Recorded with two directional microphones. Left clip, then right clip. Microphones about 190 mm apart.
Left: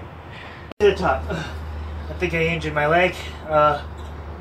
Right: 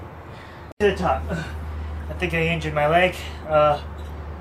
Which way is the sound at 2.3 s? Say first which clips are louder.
Left 1 dB; 5° right (ahead or behind).